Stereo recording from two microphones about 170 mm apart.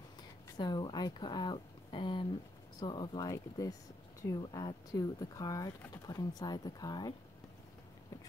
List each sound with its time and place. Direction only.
0.6 s speech: 25° left (ahead or behind)